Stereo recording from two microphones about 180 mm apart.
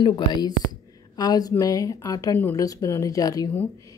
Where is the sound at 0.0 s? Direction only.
25° left (ahead or behind).